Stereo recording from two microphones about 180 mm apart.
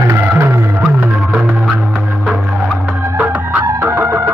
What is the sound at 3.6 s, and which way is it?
Chicken, 15° right (ahead or behind).